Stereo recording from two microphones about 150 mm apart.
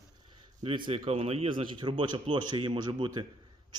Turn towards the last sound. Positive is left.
turn(degrees=-30)  # may be behind; listen again after turning